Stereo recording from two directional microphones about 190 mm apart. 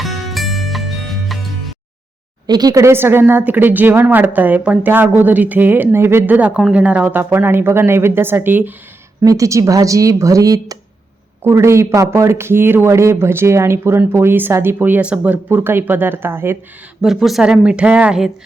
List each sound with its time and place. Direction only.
0.0 s music: centre (ahead or behind)
2.5 s a woman's voice: 20° right (ahead or behind)